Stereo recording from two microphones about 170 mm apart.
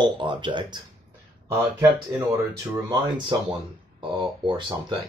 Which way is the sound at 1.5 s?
15° right (ahead or behind).